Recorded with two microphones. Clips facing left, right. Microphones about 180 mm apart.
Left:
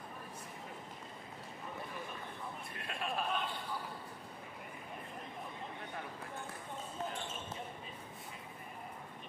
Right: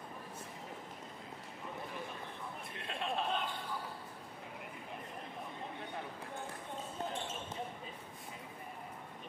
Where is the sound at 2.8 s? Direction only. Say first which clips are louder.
Right 1 dB; 25° right (ahead or behind).